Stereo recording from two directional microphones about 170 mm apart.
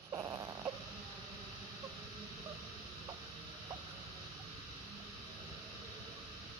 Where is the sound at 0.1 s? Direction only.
20° right (ahead or behind).